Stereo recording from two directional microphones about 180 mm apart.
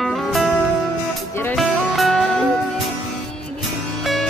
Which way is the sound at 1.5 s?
Centre (ahead or behind).